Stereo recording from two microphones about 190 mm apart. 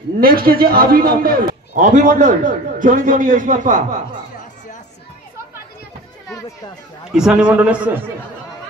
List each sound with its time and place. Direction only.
0.2 s a man's voice: 50° right (ahead or behind)
1.5 s a man's voice: 40° right (ahead or behind)
7.1 s a man's voice: 5° right (ahead or behind)